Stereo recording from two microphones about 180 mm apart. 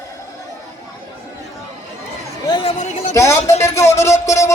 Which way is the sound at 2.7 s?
40° left (ahead or behind).